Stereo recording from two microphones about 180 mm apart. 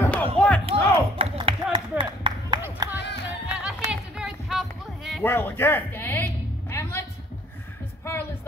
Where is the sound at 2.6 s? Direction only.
20° right (ahead or behind).